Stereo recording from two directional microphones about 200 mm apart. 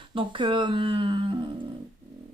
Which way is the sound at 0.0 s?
25° right (ahead or behind).